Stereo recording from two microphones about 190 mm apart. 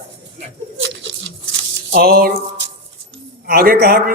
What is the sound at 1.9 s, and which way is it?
Speech, 55° right (ahead or behind).